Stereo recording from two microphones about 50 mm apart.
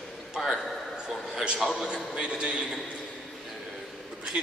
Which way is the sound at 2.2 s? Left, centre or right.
Right.